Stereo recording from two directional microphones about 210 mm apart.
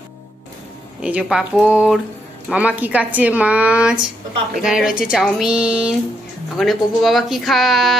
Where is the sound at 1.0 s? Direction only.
5° right (ahead or behind).